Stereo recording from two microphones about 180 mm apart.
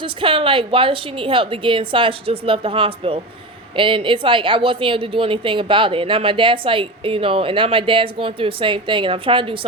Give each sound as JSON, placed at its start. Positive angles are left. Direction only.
{"t": 0.0, "sound": "a woman's voice", "side_deg": -30}